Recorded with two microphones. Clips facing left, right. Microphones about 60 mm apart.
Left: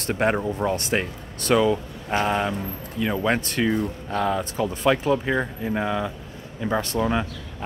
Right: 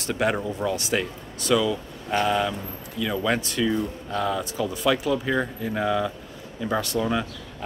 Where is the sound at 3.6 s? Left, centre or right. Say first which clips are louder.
Left 1 dB; left.